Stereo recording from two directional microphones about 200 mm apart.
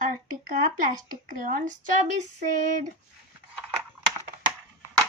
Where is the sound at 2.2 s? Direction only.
40° right (ahead or behind).